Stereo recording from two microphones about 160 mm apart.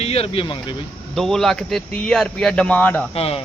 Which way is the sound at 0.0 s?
40° left (ahead or behind).